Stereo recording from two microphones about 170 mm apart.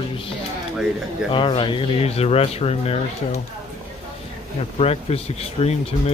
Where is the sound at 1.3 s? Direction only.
30° left (ahead or behind).